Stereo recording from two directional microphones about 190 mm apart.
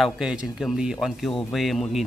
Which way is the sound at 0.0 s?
5° right (ahead or behind).